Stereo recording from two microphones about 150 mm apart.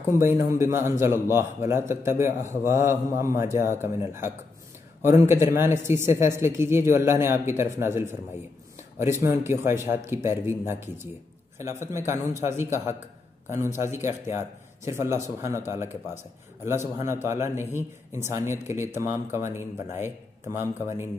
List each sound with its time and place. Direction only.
0.2 s a man's voice: 20° right (ahead or behind)
13.7 s a man's voice: 15° right (ahead or behind)
16.6 s a man's voice: 15° right (ahead or behind)